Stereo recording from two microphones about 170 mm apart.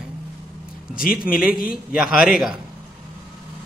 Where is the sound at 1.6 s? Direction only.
60° left (ahead or behind).